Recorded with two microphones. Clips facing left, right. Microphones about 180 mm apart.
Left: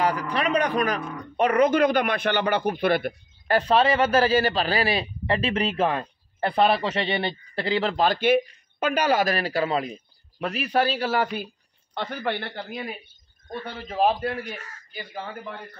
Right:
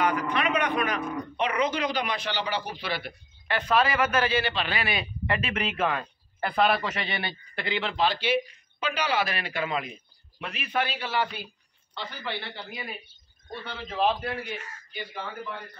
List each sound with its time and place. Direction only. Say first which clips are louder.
0.0 s a man's voice: left 2 dB; 35° left (ahead or behind)